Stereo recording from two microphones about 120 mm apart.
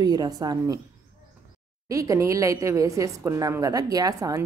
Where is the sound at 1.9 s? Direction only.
30° right (ahead or behind).